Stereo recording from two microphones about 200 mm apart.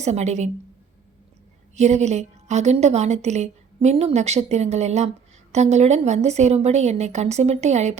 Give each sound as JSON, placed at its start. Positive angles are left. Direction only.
{"t": 0.0, "sound": "a woman's voice", "side_deg": -35}
{"t": 1.7, "sound": "a woman's voice", "side_deg": -35}